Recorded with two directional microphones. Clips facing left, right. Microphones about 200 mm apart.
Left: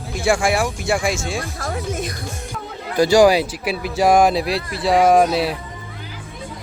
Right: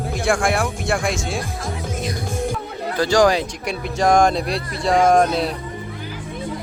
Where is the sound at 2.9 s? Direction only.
10° left (ahead or behind).